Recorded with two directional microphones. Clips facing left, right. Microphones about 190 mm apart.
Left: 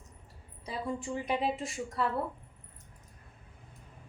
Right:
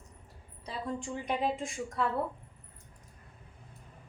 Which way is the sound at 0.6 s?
10° left (ahead or behind).